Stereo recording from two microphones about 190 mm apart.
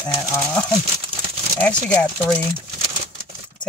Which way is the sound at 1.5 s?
5° left (ahead or behind).